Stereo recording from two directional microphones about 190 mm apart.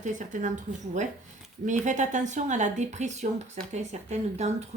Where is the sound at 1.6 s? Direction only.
40° right (ahead or behind).